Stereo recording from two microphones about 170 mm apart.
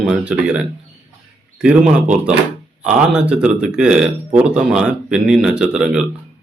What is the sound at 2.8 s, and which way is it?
Speech, 5° right (ahead or behind).